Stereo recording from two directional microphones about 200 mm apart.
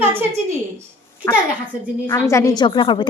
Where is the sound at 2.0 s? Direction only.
15° left (ahead or behind).